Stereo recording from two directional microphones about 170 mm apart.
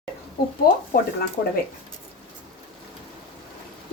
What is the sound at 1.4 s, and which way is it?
Speech, 45° left (ahead or behind).